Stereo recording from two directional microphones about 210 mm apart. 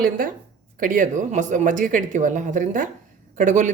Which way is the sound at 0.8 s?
40° right (ahead or behind).